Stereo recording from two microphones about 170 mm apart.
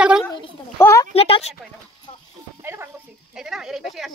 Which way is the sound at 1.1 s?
35° left (ahead or behind).